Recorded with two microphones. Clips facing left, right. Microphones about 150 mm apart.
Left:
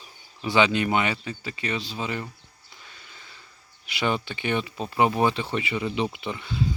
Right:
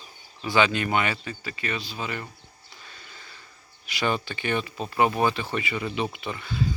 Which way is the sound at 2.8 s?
15° left (ahead or behind).